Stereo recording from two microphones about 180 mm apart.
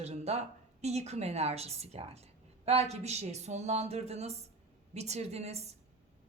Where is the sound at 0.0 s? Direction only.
35° right (ahead or behind).